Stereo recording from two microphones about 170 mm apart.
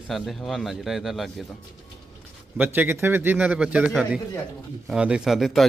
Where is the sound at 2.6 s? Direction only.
10° right (ahead or behind).